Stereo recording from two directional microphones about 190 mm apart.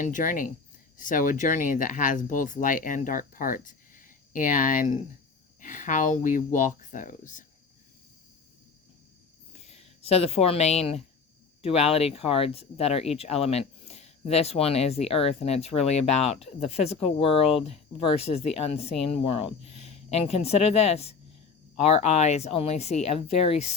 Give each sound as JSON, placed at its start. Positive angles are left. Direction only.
{"t": 0.0, "sound": "speech", "side_deg": 45}
{"t": 9.5, "sound": "speech", "side_deg": 35}